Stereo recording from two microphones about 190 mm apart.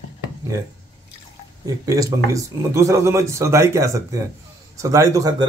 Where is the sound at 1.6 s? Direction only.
20° right (ahead or behind).